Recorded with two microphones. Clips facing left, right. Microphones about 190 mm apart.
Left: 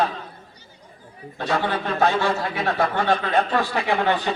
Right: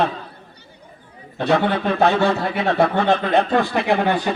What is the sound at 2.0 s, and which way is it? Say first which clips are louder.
Speech: right 3 dB; 60° right (ahead or behind).